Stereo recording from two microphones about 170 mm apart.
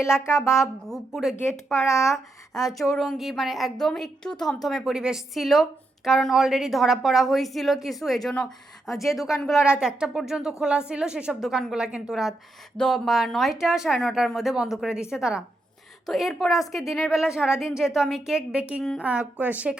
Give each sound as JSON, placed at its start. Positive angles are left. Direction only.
{"t": 0.0, "sound": "speech", "side_deg": 15}
{"t": 0.9, "sound": "a woman's voice", "side_deg": 0}